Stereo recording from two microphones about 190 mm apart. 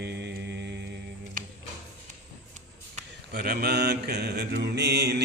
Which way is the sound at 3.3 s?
55° right (ahead or behind).